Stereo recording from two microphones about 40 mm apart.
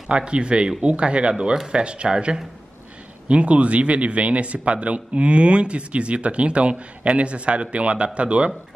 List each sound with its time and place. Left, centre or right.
0.1 s a man's voice: right